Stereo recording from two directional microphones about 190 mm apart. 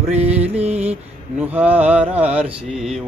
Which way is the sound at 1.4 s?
10° right (ahead or behind).